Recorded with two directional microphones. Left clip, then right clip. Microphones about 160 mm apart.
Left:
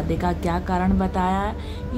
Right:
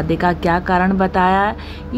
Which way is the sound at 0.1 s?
20° right (ahead or behind).